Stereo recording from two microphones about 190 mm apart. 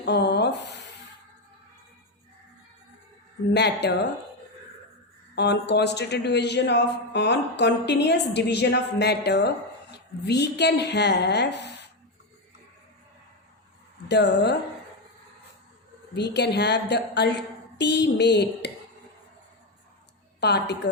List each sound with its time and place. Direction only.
0.0 s speech: 65° left (ahead or behind)
3.5 s a man's voice: 60° left (ahead or behind)
5.3 s a man's voice: 60° left (ahead or behind)
14.1 s a man's voice: 60° left (ahead or behind)
16.1 s a man's voice: 65° left (ahead or behind)
20.4 s a man's voice: 60° left (ahead or behind)